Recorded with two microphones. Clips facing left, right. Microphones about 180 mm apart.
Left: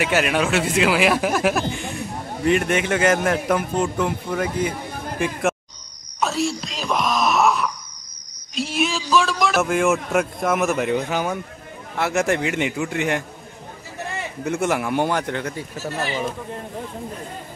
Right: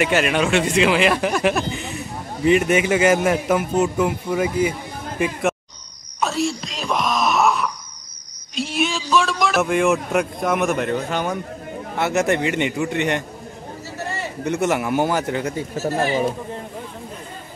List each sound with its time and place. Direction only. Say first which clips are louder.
0.0 s speech: right 1 dB; 5° left (ahead or behind)
6.2 s a sound: right 1 dB; centre (ahead or behind)
6.6 s wail: even; centre (ahead or behind)
8.5 s speech: even; centre (ahead or behind)
14.4 s speech: right 1 dB; centre (ahead or behind)
15.7 s speech: right 8 dB; 40° right (ahead or behind)